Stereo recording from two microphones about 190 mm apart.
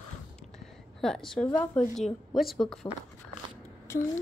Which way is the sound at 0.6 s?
Centre (ahead or behind).